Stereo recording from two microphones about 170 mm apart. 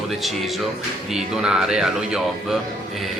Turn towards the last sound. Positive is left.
turn(degrees=0)  # may be behind; listen again after turning